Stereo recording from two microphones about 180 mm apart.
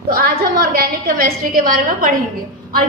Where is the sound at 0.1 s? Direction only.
55° right (ahead or behind).